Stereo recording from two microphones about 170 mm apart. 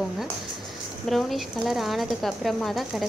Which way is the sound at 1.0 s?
Centre (ahead or behind).